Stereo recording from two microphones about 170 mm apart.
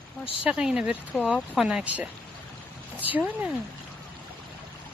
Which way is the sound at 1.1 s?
5° left (ahead or behind).